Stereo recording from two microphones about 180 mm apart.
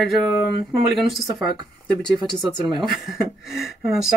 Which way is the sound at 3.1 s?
Centre (ahead or behind).